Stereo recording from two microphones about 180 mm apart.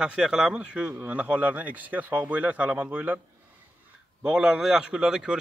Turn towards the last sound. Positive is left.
turn(degrees=-5)  # may be behind; listen again after turning